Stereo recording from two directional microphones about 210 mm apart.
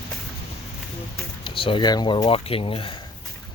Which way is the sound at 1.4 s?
25° left (ahead or behind).